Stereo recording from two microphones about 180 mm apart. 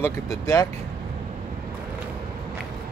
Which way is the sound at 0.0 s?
20° left (ahead or behind).